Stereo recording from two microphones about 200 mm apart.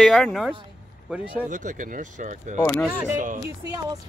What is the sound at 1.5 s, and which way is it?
Speech, 40° right (ahead or behind).